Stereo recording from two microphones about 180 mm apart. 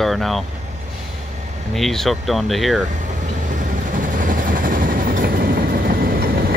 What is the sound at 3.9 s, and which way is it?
Vehicle, 50° right (ahead or behind).